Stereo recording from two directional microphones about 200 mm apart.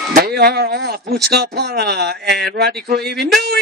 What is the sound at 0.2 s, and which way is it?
Speech, 50° right (ahead or behind).